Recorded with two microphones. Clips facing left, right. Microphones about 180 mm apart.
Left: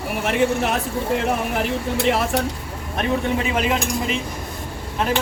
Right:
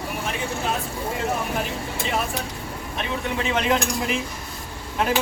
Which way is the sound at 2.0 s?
70° left (ahead or behind).